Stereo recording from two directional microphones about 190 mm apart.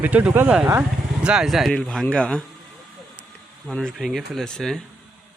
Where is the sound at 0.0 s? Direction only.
10° right (ahead or behind).